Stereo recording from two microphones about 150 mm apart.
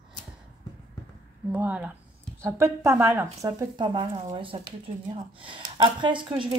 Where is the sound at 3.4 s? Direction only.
25° right (ahead or behind).